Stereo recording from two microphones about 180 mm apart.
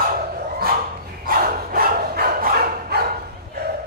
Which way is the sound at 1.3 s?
55° right (ahead or behind).